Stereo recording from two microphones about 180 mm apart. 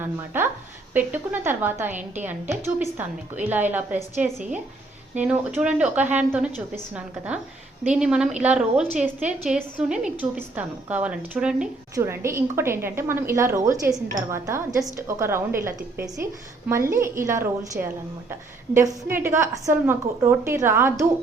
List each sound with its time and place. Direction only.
0.0 s a woman's voice: 10° right (ahead or behind)
7.9 s a woman's voice: 5° right (ahead or behind)